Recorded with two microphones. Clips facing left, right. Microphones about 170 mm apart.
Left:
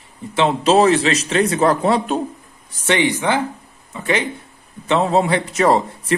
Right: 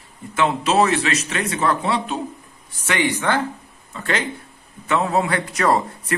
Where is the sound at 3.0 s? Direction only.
20° left (ahead or behind).